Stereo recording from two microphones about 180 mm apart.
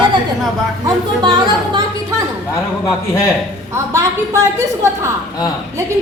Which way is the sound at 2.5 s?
15° left (ahead or behind).